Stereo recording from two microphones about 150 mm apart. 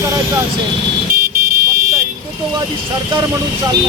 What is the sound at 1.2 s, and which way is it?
Vehicle, 75° right (ahead or behind).